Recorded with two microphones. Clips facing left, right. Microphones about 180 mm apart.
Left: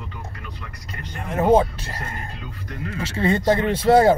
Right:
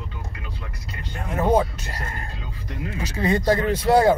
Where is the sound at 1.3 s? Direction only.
25° left (ahead or behind).